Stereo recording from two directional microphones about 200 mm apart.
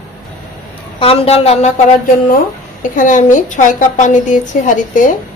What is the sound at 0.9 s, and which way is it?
Speech, 30° left (ahead or behind).